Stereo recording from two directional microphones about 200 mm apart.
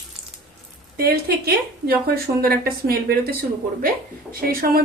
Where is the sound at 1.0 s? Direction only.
50° right (ahead or behind).